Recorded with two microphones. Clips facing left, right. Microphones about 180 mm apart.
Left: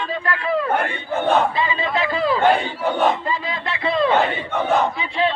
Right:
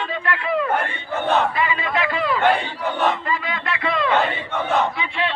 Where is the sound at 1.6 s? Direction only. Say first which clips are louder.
Left 1 dB; 30° left (ahead or behind).